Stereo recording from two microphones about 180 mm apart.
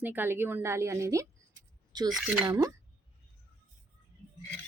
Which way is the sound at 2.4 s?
25° right (ahead or behind).